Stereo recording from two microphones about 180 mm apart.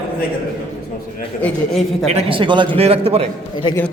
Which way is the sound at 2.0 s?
35° right (ahead or behind).